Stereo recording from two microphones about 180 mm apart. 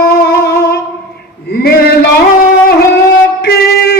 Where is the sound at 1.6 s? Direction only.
60° left (ahead or behind).